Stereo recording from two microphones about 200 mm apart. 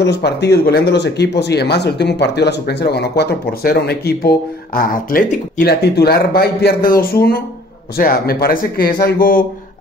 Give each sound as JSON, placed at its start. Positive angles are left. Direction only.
{"t": 0.0, "sound": "speech", "side_deg": 60}